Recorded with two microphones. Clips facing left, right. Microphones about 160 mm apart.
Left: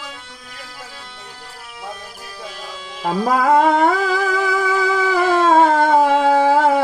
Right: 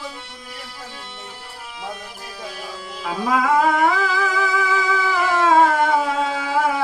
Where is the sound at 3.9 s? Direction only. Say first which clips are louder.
Left 3 dB; 45° left (ahead or behind).